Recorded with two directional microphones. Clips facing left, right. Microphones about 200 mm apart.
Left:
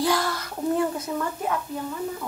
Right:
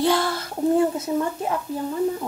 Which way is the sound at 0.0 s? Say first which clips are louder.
Right 3 dB; 25° right (ahead or behind).